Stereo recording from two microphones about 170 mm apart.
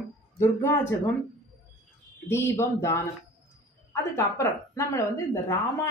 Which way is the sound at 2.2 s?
15° left (ahead or behind).